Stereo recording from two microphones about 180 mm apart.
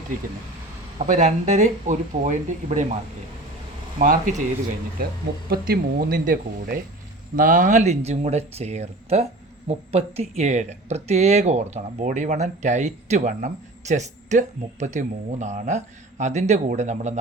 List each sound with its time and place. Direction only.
0.9 s speech: 45° right (ahead or behind)
3.9 s speech: 45° right (ahead or behind)
5.0 s speech: 60° right (ahead or behind); by 17.2 s 40° right (ahead or behind)